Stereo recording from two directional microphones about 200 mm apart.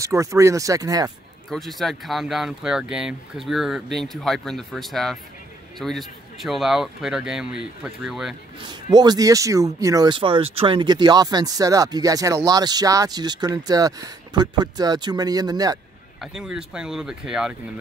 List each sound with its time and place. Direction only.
0.0 s speech: 15° right (ahead or behind)
1.5 s speech: centre (ahead or behind)
8.9 s speech: 20° right (ahead or behind)
16.2 s speech: centre (ahead or behind)